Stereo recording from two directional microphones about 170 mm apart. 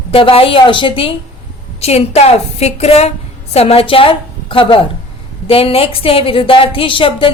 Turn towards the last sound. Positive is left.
turn(degrees=30)  # may be behind; listen again after turning